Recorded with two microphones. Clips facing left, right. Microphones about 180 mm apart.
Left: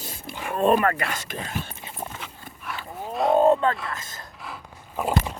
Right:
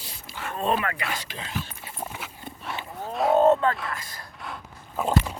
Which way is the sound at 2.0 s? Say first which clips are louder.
Even; 5° right (ahead or behind).